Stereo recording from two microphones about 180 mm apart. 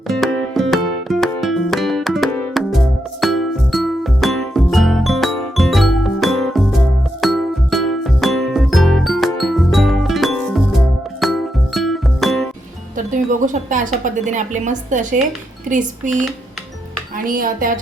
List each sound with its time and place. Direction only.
0.1 s music: centre (ahead or behind)
13.4 s a woman's voice: 45° right (ahead or behind)
17.2 s speech: 50° right (ahead or behind)